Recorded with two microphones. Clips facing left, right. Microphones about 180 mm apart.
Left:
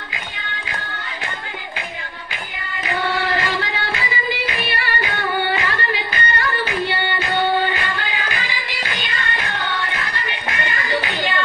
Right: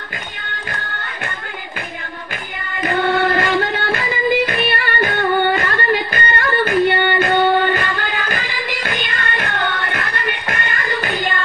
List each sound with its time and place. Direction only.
2.8 s music: 55° right (ahead or behind)